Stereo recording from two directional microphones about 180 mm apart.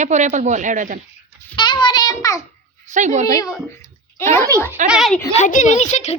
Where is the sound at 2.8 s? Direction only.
45° right (ahead or behind).